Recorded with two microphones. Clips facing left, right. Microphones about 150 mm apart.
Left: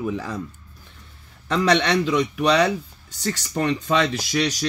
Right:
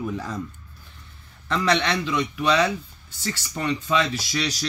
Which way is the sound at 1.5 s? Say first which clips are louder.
Left 3 dB; 20° left (ahead or behind).